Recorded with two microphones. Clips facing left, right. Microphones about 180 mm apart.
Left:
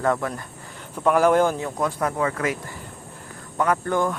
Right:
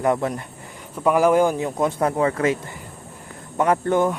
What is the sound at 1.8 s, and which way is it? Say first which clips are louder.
Speech: right 5 dB; 25° right (ahead or behind).